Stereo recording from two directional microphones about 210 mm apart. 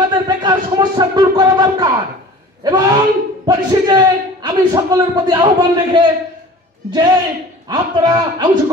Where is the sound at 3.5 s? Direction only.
20° right (ahead or behind).